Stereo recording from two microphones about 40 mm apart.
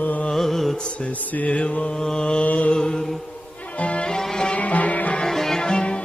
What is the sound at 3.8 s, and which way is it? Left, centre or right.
Music, left.